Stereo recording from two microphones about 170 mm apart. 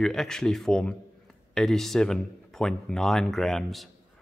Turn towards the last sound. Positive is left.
turn(degrees=0)  # may be behind; listen again after turning